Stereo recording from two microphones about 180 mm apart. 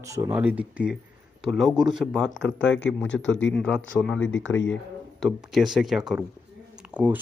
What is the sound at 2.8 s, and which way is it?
Speech, 90° left.